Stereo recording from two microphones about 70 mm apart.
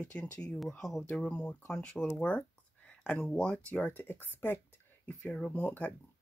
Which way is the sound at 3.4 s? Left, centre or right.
Centre.